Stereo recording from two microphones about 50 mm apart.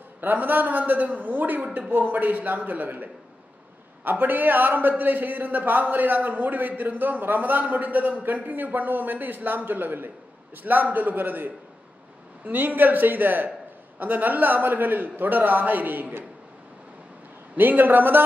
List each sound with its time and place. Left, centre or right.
0.2 s a man's voice: right
17.6 s a man's voice: right